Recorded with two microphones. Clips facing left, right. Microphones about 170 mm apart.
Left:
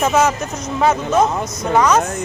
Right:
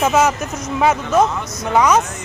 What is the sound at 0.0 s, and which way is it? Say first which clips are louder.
Speech: even; 5° right (ahead or behind).